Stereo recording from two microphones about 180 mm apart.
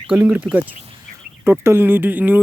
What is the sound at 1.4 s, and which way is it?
Speech, 15° right (ahead or behind).